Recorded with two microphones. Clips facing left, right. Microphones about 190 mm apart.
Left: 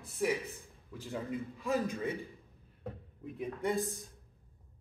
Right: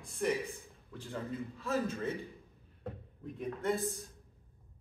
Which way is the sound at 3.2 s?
5° left (ahead or behind).